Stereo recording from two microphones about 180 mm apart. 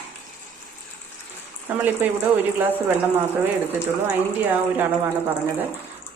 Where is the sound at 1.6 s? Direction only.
10° right (ahead or behind).